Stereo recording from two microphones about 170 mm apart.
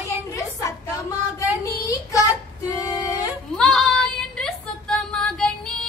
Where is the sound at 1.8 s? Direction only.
20° left (ahead or behind).